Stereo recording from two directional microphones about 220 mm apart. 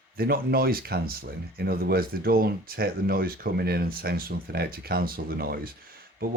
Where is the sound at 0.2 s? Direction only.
40° right (ahead or behind).